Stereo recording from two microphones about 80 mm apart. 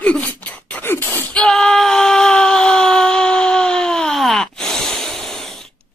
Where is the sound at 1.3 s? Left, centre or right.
Centre.